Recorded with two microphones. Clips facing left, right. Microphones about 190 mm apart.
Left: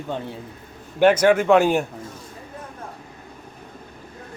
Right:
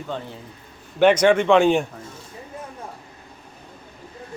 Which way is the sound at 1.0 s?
5° left (ahead or behind).